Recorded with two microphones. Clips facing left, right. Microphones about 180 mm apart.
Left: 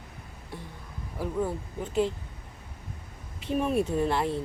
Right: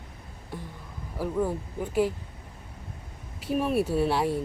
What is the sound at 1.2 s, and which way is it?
Speech, 10° right (ahead or behind).